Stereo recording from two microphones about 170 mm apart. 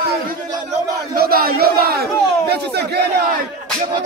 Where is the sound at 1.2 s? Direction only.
60° right (ahead or behind).